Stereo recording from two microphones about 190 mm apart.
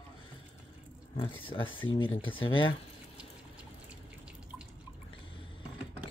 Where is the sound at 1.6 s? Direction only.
90° left.